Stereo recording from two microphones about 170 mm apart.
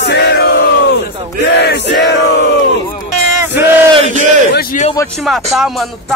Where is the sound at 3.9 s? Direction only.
45° right (ahead or behind).